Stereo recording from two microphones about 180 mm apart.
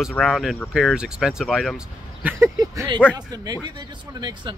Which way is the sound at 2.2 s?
15° right (ahead or behind).